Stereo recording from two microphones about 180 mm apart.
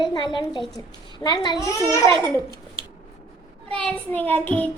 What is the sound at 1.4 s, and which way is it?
Child singing, 20° left (ahead or behind).